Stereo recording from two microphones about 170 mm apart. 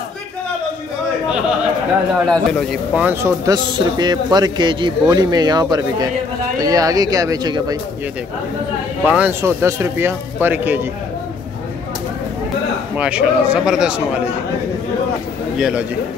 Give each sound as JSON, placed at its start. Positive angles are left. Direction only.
{"t": 2.2, "sound": "speech", "side_deg": 5}
{"t": 2.9, "sound": "a man's voice", "side_deg": -10}
{"t": 9.0, "sound": "a man's voice", "side_deg": -10}
{"t": 12.9, "sound": "a man's voice", "side_deg": -5}
{"t": 15.5, "sound": "a man's voice", "side_deg": -5}